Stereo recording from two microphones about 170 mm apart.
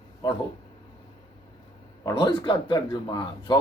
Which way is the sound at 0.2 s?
25° left (ahead or behind).